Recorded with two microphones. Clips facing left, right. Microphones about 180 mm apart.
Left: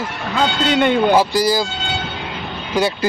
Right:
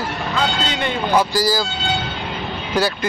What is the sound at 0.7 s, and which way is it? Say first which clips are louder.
Speech: left 8 dB; 60° left (ahead or behind).